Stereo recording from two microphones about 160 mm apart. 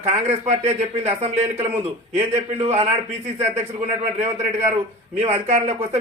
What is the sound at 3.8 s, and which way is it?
Speech, 45° right (ahead or behind).